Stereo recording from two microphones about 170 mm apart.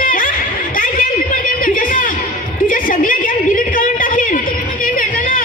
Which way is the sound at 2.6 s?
55° left (ahead or behind).